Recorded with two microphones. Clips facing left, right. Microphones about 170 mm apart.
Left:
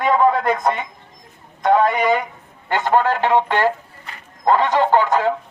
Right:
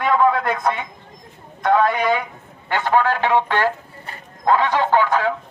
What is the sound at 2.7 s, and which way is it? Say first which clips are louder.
Speech: left 1 dB; 15° left (ahead or behind).